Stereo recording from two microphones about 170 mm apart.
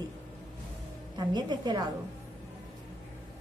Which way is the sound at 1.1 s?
25° right (ahead or behind).